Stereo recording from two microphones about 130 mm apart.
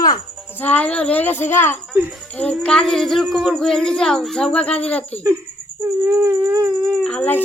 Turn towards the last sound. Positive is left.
turn(degrees=10)  # may be behind; listen again after turning